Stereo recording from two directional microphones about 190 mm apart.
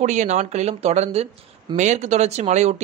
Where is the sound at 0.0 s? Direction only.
40° right (ahead or behind).